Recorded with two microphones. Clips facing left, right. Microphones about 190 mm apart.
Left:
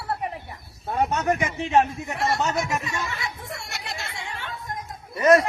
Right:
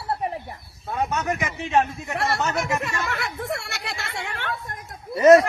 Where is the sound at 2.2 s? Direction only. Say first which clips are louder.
Even; 70° right (ahead or behind).